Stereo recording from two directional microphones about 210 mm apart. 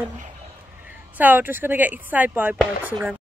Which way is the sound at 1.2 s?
10° right (ahead or behind).